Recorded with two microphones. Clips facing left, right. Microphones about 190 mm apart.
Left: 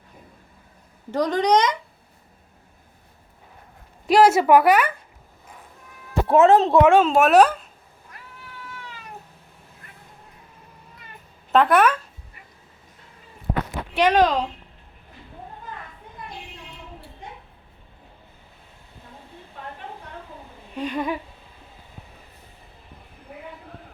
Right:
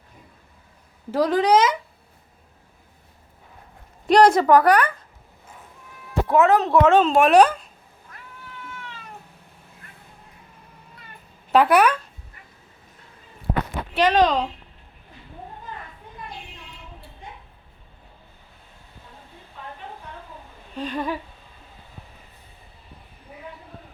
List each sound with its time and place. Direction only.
1.1 s speech: 5° right (ahead or behind)
4.0 s a sound: 5° left (ahead or behind)
6.2 s speech: 25° left (ahead or behind)
6.8 s speech: 10° left (ahead or behind)
11.5 s speech: centre (ahead or behind)
13.9 s speech: 10° left (ahead or behind)
20.7 s speech: 10° left (ahead or behind)